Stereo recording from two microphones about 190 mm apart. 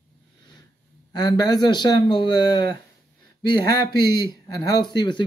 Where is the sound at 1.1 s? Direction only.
20° left (ahead or behind).